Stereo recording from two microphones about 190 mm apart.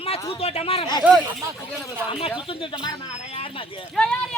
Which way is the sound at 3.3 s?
30° left (ahead or behind).